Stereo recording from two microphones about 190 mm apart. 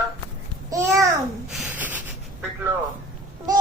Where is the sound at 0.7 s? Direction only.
15° right (ahead or behind).